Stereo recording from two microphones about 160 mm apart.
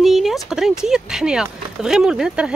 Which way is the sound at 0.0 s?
Centre (ahead or behind).